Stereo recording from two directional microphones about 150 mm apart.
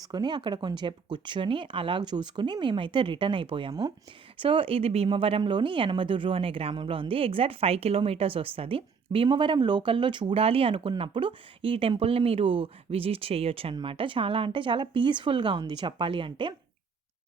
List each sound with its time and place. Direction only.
0.0 s speech: 30° right (ahead or behind)